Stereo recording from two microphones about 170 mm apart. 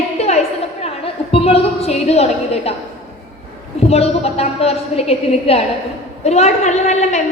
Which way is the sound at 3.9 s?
35° left (ahead or behind).